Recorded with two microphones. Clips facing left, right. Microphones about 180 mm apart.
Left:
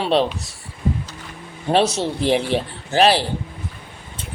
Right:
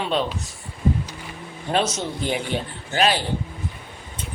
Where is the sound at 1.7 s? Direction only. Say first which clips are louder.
Left 5 dB; 30° left (ahead or behind).